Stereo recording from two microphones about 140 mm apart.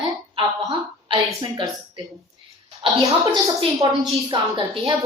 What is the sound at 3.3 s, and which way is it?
A woman's voice, 30° right (ahead or behind).